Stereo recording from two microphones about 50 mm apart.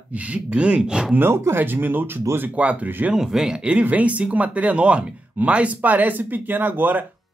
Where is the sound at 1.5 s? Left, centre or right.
Right.